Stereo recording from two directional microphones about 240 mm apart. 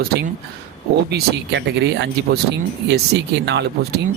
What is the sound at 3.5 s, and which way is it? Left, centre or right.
Speech, right.